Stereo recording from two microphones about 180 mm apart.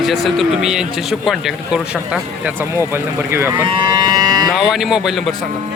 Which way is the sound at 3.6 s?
25° right (ahead or behind).